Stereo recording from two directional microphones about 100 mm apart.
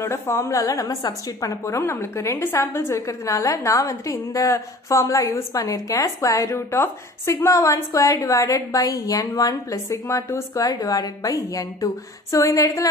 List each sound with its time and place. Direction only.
0.0 s a woman's voice: 30° left (ahead or behind)